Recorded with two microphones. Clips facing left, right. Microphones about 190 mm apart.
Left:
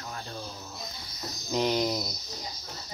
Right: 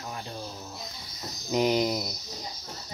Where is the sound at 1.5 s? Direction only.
10° right (ahead or behind).